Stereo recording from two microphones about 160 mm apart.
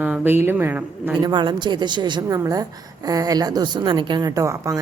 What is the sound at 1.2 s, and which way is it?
A woman's voice, 30° right (ahead or behind).